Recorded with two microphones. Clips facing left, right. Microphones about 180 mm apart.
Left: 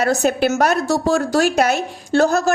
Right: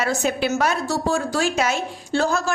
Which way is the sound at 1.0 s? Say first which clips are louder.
Left 5 dB; 75° left (ahead or behind).